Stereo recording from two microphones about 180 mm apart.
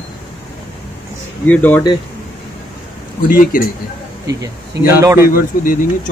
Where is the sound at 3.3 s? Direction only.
50° left (ahead or behind).